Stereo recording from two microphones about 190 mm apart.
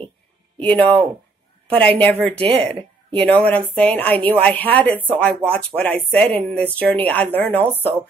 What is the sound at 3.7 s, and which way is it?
A woman's voice, 5° left (ahead or behind).